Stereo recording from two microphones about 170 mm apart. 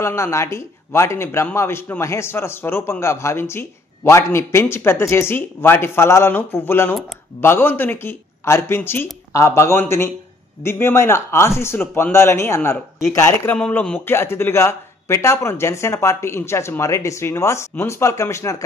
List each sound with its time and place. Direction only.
0.0 s speech: 15° left (ahead or behind)